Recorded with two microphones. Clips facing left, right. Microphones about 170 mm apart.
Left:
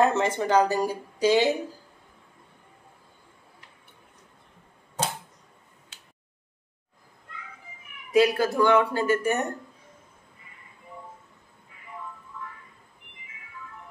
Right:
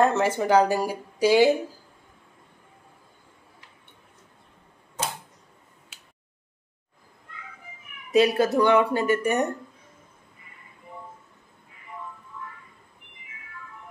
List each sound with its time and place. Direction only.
0.0 s speech: 5° right (ahead or behind)
8.1 s speech: 20° right (ahead or behind)